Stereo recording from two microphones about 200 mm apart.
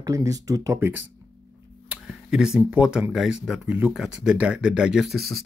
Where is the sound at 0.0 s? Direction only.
15° right (ahead or behind).